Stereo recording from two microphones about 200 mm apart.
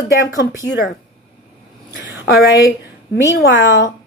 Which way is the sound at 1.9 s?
10° right (ahead or behind).